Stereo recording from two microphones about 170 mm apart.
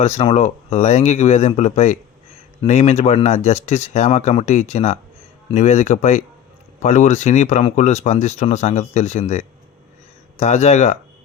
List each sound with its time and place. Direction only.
0.0 s speech: 40° left (ahead or behind)
10.4 s speech: 40° left (ahead or behind)